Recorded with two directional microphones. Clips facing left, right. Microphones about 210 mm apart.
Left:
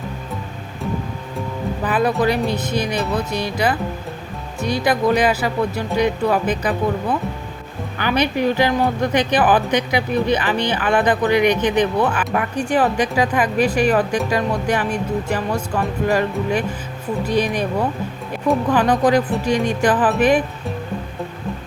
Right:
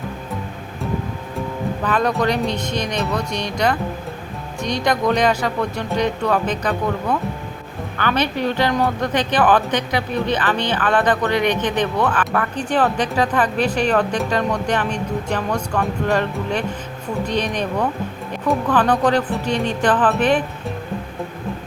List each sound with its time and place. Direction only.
1.8 s a woman's voice: 5° left (ahead or behind)